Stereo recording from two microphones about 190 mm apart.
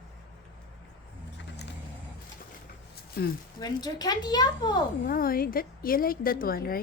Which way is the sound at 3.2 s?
60° left (ahead or behind).